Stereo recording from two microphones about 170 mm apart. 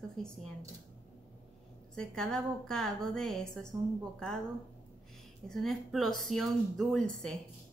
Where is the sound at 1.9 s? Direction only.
5° left (ahead or behind).